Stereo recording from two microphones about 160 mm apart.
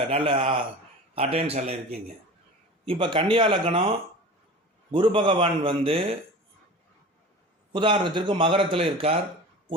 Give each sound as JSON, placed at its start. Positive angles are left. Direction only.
{"t": 0.1, "sound": "a man's voice", "side_deg": -35}
{"t": 2.8, "sound": "a man's voice", "side_deg": -35}
{"t": 7.7, "sound": "a man's voice", "side_deg": -30}